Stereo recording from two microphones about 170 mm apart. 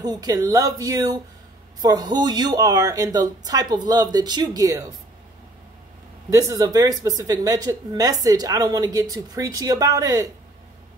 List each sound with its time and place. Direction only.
0.0 s speech: 20° right (ahead or behind)
6.3 s speech: 20° right (ahead or behind)